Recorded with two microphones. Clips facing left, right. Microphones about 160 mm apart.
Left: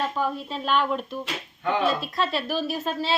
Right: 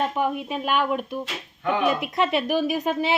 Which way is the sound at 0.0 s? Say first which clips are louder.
Right 3 dB; 20° right (ahead or behind).